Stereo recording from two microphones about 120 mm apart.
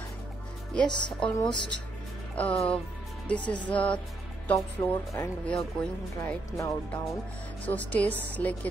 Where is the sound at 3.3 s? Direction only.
10° left (ahead or behind).